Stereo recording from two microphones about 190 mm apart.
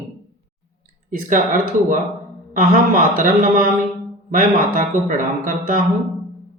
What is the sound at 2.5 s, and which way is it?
Speech, 45° right (ahead or behind).